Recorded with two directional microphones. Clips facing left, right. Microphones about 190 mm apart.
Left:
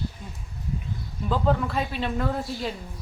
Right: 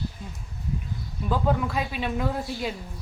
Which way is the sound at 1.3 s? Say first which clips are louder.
Left 1 dB; 5° right (ahead or behind).